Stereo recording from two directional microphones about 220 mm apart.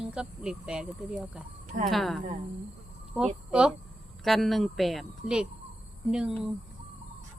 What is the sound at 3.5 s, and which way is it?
Speech, 5° right (ahead or behind).